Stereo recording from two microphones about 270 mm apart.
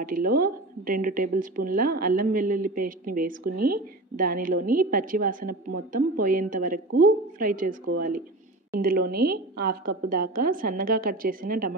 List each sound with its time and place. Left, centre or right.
0.0 s speech: right
8.8 s speech: right